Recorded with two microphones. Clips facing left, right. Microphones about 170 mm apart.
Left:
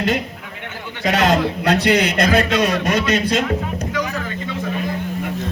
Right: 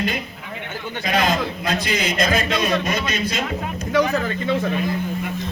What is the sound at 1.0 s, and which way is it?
A man's voice, 75° left (ahead or behind).